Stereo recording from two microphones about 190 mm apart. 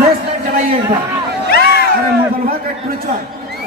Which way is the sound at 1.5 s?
55° left (ahead or behind).